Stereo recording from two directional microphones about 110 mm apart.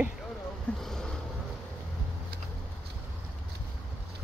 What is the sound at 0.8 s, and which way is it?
Boat, 5° left (ahead or behind).